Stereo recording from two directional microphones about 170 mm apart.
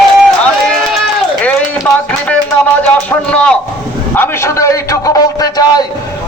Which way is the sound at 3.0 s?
5° left (ahead or behind).